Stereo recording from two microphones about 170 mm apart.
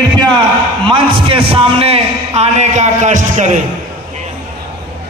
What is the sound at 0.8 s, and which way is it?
A man's voice, 30° right (ahead or behind).